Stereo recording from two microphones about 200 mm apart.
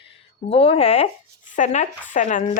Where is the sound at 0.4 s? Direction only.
30° left (ahead or behind).